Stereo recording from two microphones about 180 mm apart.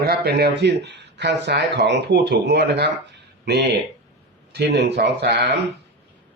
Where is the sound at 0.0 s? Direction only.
60° right (ahead or behind).